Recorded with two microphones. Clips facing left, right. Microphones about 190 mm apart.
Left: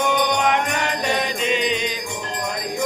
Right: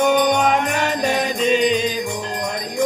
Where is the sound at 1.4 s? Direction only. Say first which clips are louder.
Right 6 dB; 35° right (ahead or behind).